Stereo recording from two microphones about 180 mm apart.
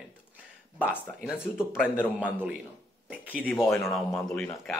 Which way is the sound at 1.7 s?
5° right (ahead or behind).